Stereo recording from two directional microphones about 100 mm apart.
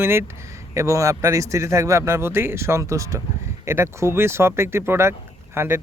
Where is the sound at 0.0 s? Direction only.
25° right (ahead or behind).